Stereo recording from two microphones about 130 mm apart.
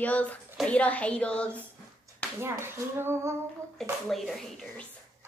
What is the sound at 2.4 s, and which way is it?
Speech, 20° right (ahead or behind).